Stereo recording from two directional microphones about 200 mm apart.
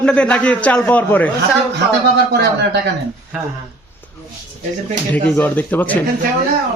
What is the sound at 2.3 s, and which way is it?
Speech, 55° right (ahead or behind).